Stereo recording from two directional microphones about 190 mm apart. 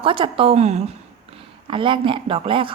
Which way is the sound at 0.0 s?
25° right (ahead or behind).